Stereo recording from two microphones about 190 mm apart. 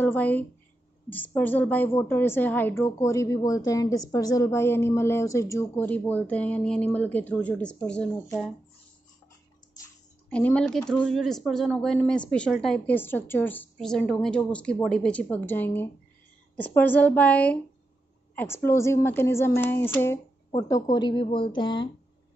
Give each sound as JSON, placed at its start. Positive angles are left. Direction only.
{"t": 0.0, "sound": "a woman's voice", "side_deg": 10}
{"t": 10.3, "sound": "a woman's voice", "side_deg": 5}